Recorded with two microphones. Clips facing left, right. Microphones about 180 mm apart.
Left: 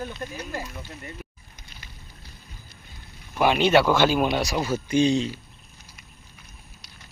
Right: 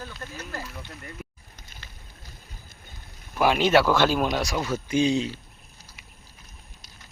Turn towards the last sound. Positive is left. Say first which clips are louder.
# left 2 dB
turn(degrees=-5)  # may be behind; listen again after turning